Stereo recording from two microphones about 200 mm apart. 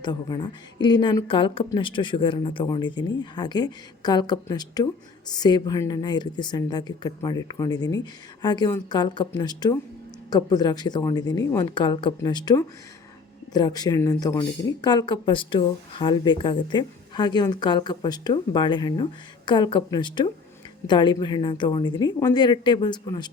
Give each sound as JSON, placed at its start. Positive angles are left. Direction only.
{"t": 0.0, "sound": "speech", "side_deg": 20}